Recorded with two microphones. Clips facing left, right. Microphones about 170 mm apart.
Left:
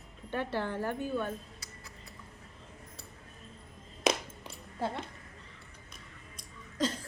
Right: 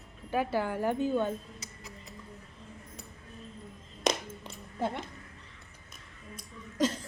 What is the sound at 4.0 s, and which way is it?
Music, 5° left (ahead or behind).